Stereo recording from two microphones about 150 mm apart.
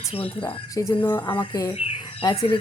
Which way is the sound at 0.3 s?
35° left (ahead or behind).